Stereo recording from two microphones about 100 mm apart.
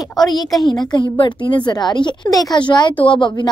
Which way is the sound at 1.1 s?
55° left (ahead or behind).